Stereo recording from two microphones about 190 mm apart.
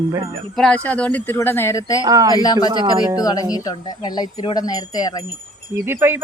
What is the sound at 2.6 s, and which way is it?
Speech, 25° right (ahead or behind).